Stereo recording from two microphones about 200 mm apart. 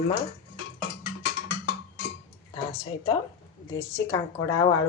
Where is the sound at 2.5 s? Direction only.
20° left (ahead or behind).